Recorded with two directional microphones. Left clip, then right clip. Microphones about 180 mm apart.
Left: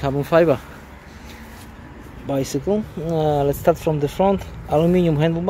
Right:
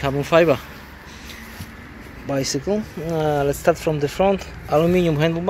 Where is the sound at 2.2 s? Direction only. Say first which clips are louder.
Left 1 dB; 15° left (ahead or behind).